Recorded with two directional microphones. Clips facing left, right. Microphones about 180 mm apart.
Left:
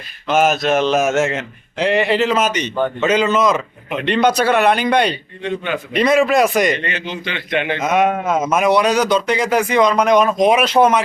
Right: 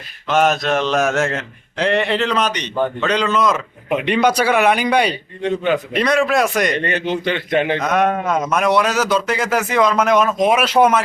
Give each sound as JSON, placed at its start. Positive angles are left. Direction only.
{"t": 0.3, "sound": "speech", "side_deg": 0}
{"t": 5.9, "sound": "speech", "side_deg": 0}
{"t": 6.8, "sound": "a man's voice", "side_deg": -50}
{"t": 7.8, "sound": "speech", "side_deg": 0}